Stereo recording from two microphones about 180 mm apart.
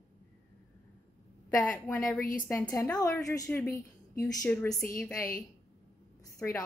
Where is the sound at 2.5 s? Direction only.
10° left (ahead or behind).